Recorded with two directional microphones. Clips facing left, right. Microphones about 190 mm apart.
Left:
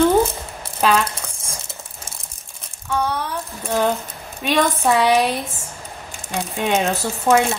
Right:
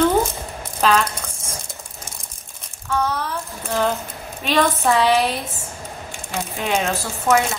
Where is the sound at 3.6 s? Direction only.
15° left (ahead or behind).